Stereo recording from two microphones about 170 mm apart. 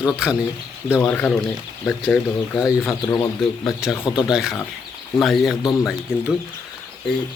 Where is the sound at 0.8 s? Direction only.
15° left (ahead or behind).